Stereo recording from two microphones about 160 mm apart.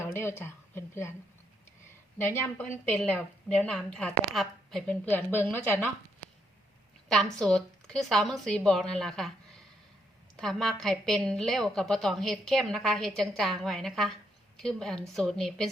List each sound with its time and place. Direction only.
0.0 s a woman's voice: 15° left (ahead or behind)
2.2 s a woman's voice: 15° left (ahead or behind)
7.3 s a woman's voice: 5° left (ahead or behind)